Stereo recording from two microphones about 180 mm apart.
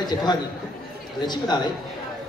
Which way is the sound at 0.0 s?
25° left (ahead or behind).